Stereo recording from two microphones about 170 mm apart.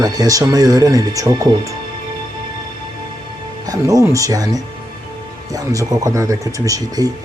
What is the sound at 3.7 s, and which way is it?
Speech, 20° right (ahead or behind).